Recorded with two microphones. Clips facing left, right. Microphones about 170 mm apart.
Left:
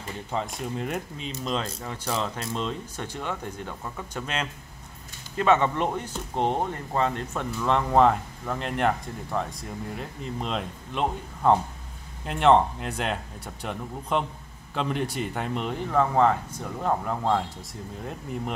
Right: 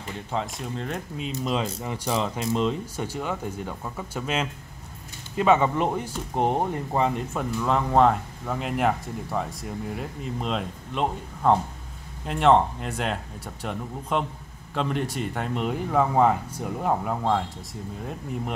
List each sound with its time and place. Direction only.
0.3 s speech: 5° left (ahead or behind)